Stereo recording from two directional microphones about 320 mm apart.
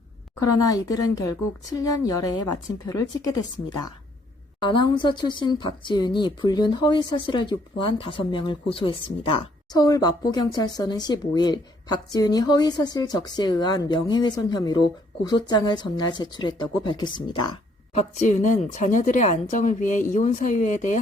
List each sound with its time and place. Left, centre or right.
0.3 s a woman's voice: centre
4.6 s a woman's voice: centre